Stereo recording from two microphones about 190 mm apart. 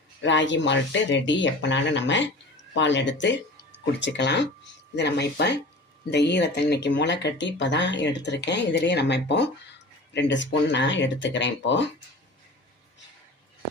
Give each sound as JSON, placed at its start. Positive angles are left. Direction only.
{"t": 0.2, "sound": "speech", "side_deg": 70}